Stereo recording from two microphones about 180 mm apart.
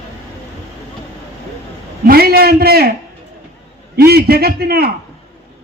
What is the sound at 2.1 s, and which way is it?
Speech, 55° right (ahead or behind).